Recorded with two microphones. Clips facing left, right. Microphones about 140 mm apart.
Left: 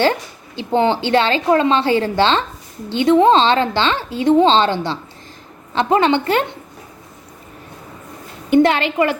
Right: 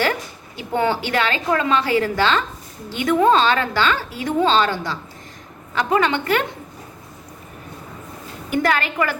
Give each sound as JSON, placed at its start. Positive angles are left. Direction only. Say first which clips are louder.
{"t": 0.0, "sound": "a woman's voice", "louder": "left 5 dB", "side_deg": 25}
{"t": 8.4, "sound": "a woman's voice", "louder": "left 7 dB", "side_deg": 25}